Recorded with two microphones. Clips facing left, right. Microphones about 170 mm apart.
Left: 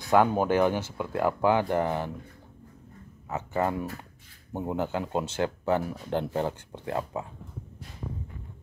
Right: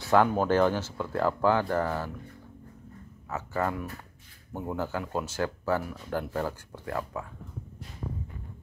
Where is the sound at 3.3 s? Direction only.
20° left (ahead or behind).